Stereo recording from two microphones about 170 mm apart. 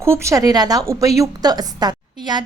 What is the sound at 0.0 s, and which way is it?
A woman's voice, 15° right (ahead or behind).